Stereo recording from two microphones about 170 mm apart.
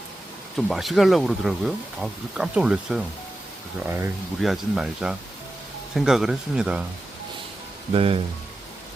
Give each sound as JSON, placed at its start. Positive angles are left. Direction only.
{"t": 0.5, "sound": "speech", "side_deg": 0}
{"t": 4.4, "sound": "speech", "side_deg": 0}
{"t": 7.9, "sound": "speech", "side_deg": -35}